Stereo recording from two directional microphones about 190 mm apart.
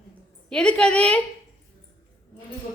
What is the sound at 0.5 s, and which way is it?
Speech, 5° left (ahead or behind).